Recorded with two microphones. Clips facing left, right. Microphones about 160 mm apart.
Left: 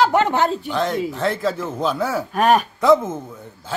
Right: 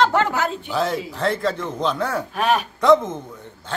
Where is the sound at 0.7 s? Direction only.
Centre (ahead or behind).